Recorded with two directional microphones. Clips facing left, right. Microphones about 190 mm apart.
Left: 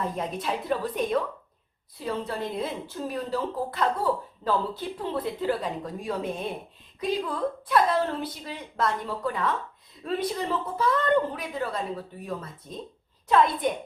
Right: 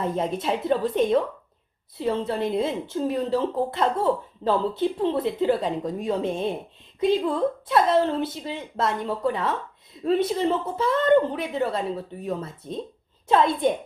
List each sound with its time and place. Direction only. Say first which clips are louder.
0.0 s a woman's voice: right 5 dB; 25° right (ahead or behind)